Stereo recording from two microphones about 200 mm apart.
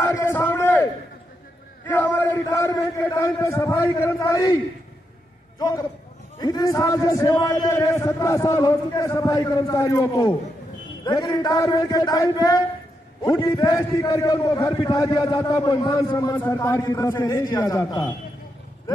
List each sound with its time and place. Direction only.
0.0 s a sound: 10° left (ahead or behind)
1.9 s a man's voice: 10° left (ahead or behind)
5.6 s a man's voice: 20° left (ahead or behind)